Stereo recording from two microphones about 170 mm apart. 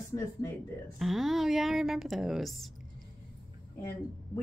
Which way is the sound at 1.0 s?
Centre (ahead or behind).